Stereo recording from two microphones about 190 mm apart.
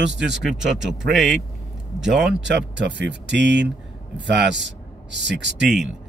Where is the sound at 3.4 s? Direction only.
65° right (ahead or behind).